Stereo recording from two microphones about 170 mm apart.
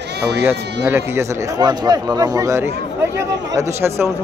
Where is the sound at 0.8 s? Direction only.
15° right (ahead or behind).